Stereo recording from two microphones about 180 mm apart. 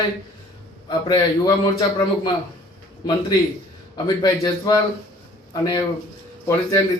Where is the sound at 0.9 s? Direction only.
25° left (ahead or behind).